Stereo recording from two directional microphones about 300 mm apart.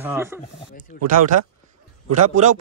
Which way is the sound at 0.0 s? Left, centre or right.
Centre.